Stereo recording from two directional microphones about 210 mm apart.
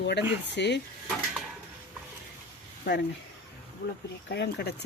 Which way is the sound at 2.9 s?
55° left (ahead or behind).